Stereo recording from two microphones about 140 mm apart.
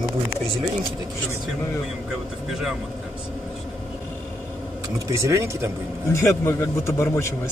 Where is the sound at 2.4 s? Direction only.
Centre (ahead or behind).